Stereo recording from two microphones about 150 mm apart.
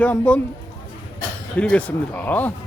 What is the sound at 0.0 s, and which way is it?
Speech, 10° left (ahead or behind).